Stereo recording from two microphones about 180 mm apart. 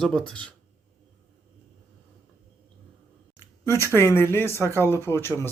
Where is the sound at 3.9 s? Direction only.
15° left (ahead or behind).